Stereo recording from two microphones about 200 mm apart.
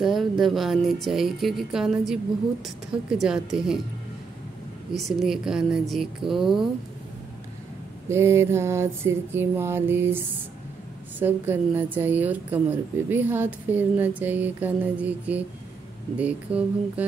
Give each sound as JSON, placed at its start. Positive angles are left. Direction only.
{"t": 0.0, "sound": "speech", "side_deg": 0}
{"t": 4.9, "sound": "speech", "side_deg": 0}
{"t": 8.1, "sound": "a sound", "side_deg": -15}